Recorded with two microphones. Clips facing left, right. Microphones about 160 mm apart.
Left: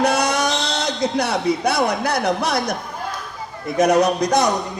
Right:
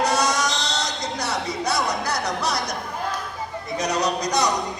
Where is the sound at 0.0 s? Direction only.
55° left (ahead or behind).